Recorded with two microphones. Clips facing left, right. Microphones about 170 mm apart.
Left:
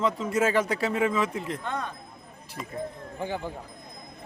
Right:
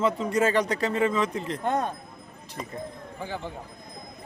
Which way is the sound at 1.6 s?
45° right (ahead or behind).